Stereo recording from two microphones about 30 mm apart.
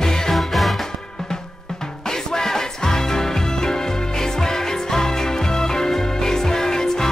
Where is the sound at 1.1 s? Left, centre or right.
Left.